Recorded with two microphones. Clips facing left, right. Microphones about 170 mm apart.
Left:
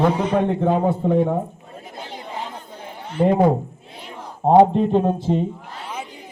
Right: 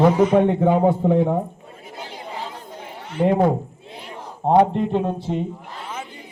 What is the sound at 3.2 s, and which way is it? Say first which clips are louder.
Speech: left 1 dB; 10° left (ahead or behind).